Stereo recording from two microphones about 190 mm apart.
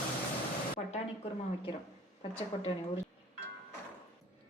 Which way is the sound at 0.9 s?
35° left (ahead or behind).